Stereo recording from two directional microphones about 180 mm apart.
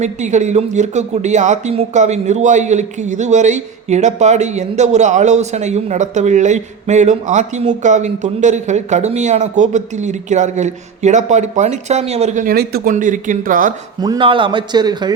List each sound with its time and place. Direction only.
0.0 s speech: 40° right (ahead or behind)
12.5 s speech: 60° right (ahead or behind)
12.9 s speech: 45° right (ahead or behind)
14.0 s speech: 25° right (ahead or behind)